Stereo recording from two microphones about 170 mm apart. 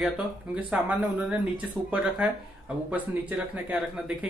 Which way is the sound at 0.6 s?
10° right (ahead or behind).